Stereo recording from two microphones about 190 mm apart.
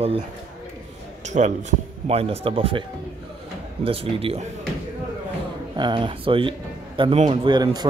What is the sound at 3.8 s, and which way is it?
Speech, 30° right (ahead or behind).